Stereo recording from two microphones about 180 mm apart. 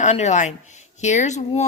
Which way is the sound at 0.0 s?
40° left (ahead or behind).